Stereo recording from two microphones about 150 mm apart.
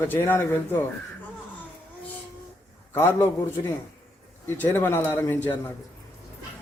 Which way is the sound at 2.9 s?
15° left (ahead or behind).